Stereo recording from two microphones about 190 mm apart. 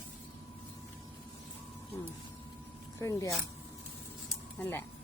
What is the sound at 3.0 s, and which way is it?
Speech, 15° left (ahead or behind).